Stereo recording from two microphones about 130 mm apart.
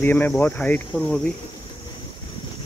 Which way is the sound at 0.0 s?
15° left (ahead or behind).